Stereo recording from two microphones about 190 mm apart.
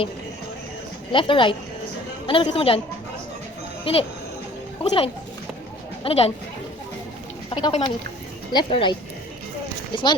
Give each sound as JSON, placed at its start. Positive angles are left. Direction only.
{"t": 1.1, "sound": "a woman's voice", "side_deg": 25}
{"t": 3.9, "sound": "a woman's voice", "side_deg": 30}
{"t": 7.5, "sound": "a woman's voice", "side_deg": 25}